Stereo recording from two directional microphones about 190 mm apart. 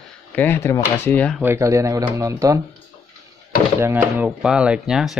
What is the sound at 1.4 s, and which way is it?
Speech, 15° right (ahead or behind).